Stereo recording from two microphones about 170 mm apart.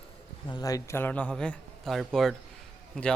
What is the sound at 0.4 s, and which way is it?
A man's voice, 25° left (ahead or behind).